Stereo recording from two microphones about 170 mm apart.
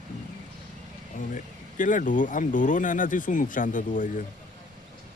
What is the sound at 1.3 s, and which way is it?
Speech, 50° left (ahead or behind).